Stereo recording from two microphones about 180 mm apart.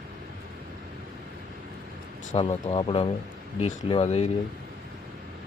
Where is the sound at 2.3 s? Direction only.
35° left (ahead or behind).